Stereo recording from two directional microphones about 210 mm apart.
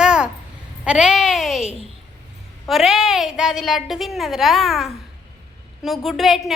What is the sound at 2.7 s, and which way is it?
A woman's voice, centre (ahead or behind).